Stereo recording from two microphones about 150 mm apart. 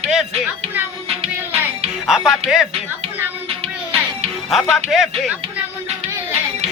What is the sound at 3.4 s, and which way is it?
Music, 40° right (ahead or behind).